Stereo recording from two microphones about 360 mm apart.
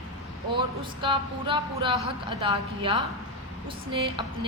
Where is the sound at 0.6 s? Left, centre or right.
Centre.